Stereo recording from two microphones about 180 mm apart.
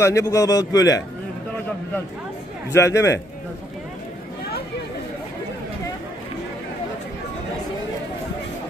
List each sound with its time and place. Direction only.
0.0 s a man's voice: 15° left (ahead or behind)
2.7 s a man's voice: 15° left (ahead or behind)